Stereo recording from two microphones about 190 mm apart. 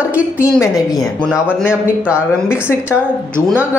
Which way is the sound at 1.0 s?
Centre (ahead or behind).